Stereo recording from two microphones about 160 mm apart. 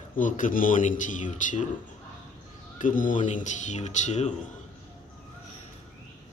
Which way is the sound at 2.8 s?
55° left (ahead or behind).